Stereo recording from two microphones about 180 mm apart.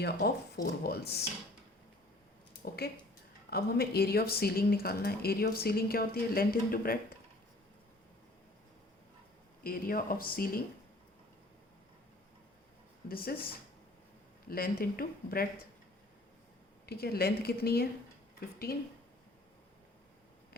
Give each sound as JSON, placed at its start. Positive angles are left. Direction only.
{"t": 0.0, "sound": "speech", "side_deg": 60}
{"t": 3.5, "sound": "speech", "side_deg": 60}
{"t": 9.6, "sound": "speech", "side_deg": 55}
{"t": 13.1, "sound": "speech", "side_deg": 55}
{"t": 14.4, "sound": "speech", "side_deg": 55}
{"t": 16.8, "sound": "speech", "side_deg": 60}